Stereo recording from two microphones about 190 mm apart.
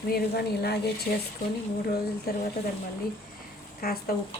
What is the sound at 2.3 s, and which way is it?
Speech, 55° left (ahead or behind).